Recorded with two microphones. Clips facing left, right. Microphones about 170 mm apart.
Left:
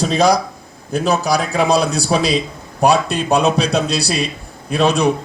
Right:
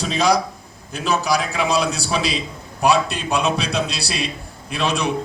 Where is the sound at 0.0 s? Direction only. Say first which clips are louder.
Left 4 dB; 40° left (ahead or behind).